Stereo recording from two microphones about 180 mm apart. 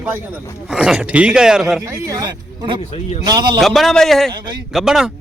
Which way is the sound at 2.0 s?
20° right (ahead or behind).